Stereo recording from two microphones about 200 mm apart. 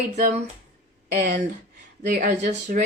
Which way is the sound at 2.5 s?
40° right (ahead or behind).